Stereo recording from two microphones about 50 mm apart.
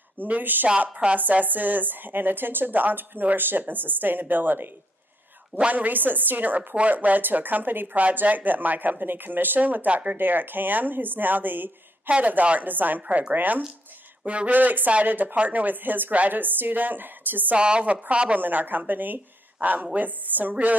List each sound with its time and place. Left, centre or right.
0.2 s a woman's voice: right
5.7 s a woman's voice: right
13.0 s a woman's voice: right
13.3 s a woman's voice: right
14.2 s a woman's voice: right
14.5 s a woman's voice: right
17.6 s a woman's voice: right
18.4 s a woman's voice: right